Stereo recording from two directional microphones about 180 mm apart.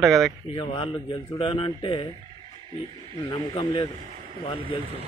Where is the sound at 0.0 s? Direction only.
Centre (ahead or behind).